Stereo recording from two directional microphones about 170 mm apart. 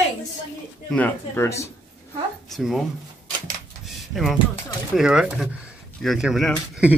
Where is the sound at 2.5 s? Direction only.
Centre (ahead or behind).